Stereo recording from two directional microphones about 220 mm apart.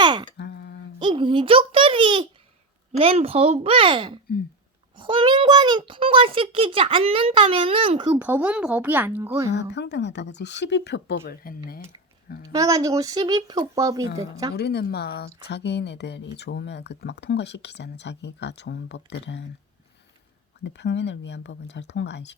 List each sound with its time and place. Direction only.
0.0 s a sound: 20° right (ahead or behind)
0.3 s a sound: 50° left (ahead or behind)
0.9 s a child's voice: 20° right (ahead or behind)
8.2 s speech: 5° right (ahead or behind)
9.5 s speech: 55° left (ahead or behind)
12.5 s speech: 15° right (ahead or behind)
14.5 s speech: 45° left (ahead or behind)
20.7 s speech: 50° left (ahead or behind)